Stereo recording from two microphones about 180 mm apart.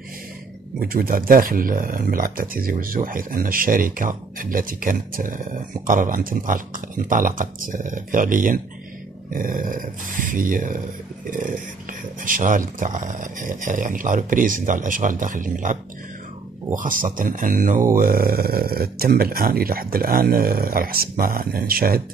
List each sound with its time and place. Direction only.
0.7 s speech: 55° right (ahead or behind)